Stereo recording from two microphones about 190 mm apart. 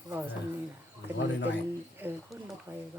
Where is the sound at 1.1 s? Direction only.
65° left (ahead or behind).